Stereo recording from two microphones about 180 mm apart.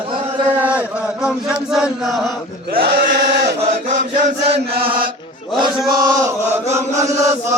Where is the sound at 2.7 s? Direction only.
60° right (ahead or behind).